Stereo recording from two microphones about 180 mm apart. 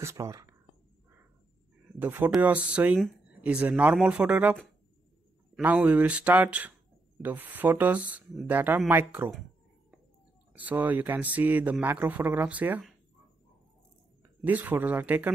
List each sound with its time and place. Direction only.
0.0 s speech: 15° right (ahead or behind)
2.0 s speech: 10° right (ahead or behind)
5.6 s speech: 10° right (ahead or behind)
10.5 s speech: 10° right (ahead or behind)
14.4 s speech: 10° right (ahead or behind)